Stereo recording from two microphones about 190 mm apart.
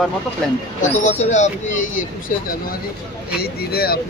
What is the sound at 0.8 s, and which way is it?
Speech, 40° left (ahead or behind).